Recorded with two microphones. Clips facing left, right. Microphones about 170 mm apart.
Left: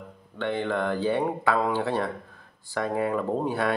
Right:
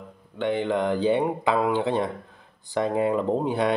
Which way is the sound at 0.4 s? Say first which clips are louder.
Right 3 dB; 15° right (ahead or behind).